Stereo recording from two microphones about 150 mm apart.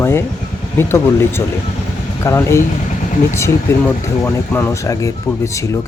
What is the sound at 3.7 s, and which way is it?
Speech, 15° left (ahead or behind).